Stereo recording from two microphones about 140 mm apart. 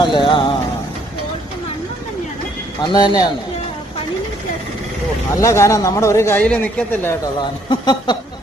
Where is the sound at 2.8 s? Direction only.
30° left (ahead or behind).